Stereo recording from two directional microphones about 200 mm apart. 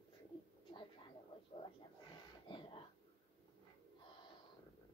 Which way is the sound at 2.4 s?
25° left (ahead or behind).